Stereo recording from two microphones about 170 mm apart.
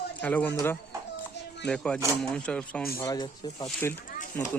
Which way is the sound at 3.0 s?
20° left (ahead or behind).